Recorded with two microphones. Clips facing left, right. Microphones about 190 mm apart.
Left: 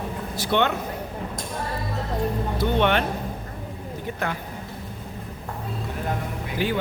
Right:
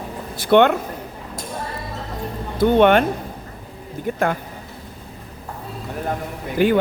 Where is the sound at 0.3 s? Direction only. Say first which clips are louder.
Right 9 dB; 55° right (ahead or behind).